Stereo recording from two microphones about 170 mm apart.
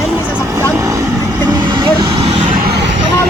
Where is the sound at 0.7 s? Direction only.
20° right (ahead or behind).